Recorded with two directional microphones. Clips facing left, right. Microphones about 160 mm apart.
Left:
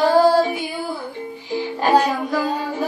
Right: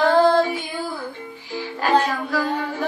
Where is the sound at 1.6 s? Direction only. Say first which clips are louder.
Left 3 dB; 20° left (ahead or behind).